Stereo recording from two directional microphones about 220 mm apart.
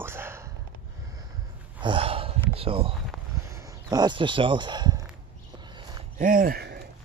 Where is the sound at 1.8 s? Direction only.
25° right (ahead or behind).